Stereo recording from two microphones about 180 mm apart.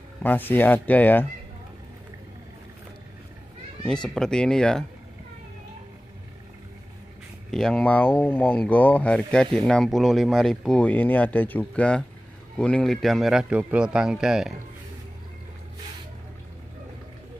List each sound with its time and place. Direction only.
0.2 s speech: 10° left (ahead or behind)
4.1 s speech: 5° left (ahead or behind)
7.5 s speech: 5° left (ahead or behind)